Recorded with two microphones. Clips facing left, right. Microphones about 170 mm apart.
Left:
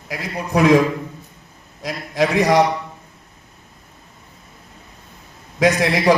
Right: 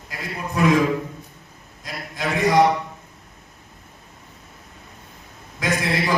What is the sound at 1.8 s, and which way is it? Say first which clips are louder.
Speech: left 9 dB; 80° left.